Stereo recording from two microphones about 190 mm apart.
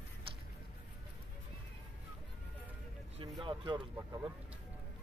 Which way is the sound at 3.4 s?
25° right (ahead or behind).